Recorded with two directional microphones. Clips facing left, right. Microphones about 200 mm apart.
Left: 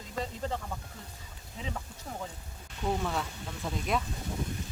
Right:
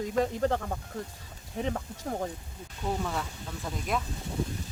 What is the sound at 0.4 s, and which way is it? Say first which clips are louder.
Speech: right 7 dB; 65° right (ahead or behind).